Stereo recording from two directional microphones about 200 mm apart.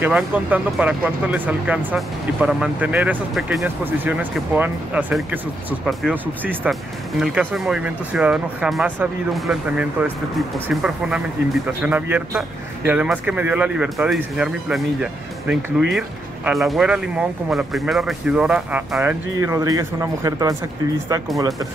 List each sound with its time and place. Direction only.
0.0 s speech: 5° right (ahead or behind)